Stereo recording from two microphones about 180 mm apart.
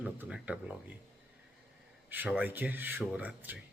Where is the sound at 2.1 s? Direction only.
10° right (ahead or behind).